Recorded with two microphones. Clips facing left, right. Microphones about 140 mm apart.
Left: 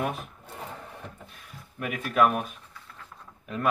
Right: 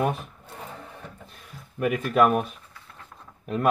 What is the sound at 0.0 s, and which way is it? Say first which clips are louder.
Speech: right 5 dB; 35° right (ahead or behind).